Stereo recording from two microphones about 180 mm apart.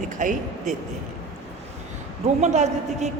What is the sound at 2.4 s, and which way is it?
Speech, 40° right (ahead or behind).